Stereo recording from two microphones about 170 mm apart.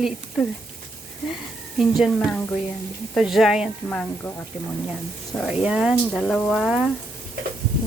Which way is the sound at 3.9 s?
5° left (ahead or behind).